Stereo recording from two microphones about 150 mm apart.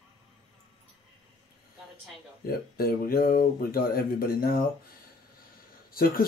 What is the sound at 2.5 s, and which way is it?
Speech, 85° left.